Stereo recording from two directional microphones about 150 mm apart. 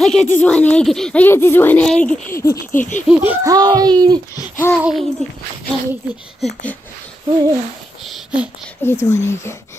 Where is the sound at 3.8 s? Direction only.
25° right (ahead or behind).